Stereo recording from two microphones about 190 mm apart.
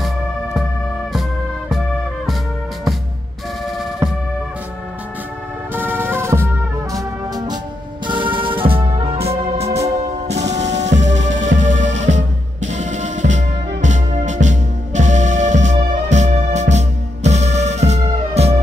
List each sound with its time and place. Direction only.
5.8 s music: 10° right (ahead or behind); by 18.6 s 35° right (ahead or behind)